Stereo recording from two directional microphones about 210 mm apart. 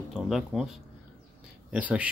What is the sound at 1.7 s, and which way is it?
Speech, 5° right (ahead or behind).